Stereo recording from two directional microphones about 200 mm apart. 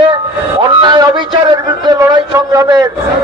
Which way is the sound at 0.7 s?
20° right (ahead or behind).